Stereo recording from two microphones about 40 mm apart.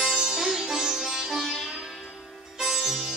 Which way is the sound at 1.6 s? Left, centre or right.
Centre.